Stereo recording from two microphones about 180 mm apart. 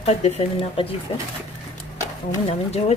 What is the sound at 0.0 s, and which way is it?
Speech, 35° left (ahead or behind).